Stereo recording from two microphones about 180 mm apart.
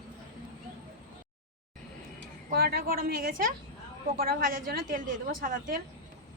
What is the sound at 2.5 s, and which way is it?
A woman's voice, 60° right (ahead or behind).